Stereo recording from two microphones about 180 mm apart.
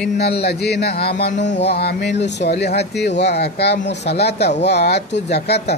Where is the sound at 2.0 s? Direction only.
40° left (ahead or behind).